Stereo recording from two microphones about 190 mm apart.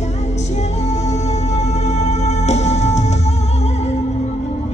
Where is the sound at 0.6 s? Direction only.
35° left (ahead or behind).